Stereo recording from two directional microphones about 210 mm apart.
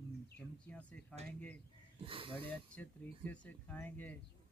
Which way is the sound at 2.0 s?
25° right (ahead or behind).